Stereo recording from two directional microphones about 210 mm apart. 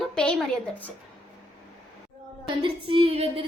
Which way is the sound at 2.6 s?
25° right (ahead or behind).